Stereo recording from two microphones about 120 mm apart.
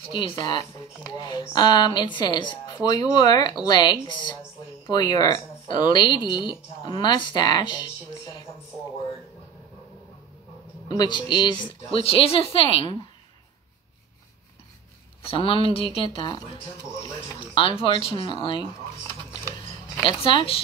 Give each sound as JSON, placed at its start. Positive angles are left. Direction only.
{"t": 0.1, "sound": "speech", "side_deg": 40}
{"t": 10.9, "sound": "speech", "side_deg": 40}
{"t": 15.2, "sound": "speech", "side_deg": 50}
{"t": 17.6, "sound": "speech", "side_deg": 50}
{"t": 20.2, "sound": "speech", "side_deg": 50}